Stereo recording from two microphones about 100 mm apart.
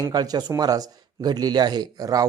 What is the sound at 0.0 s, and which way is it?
Speech, 40° right (ahead or behind).